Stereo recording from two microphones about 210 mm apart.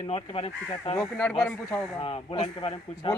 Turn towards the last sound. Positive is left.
turn(degrees=25)  # may be behind; listen again after turning